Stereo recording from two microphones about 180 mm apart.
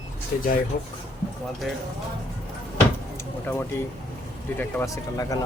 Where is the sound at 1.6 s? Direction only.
Centre (ahead or behind).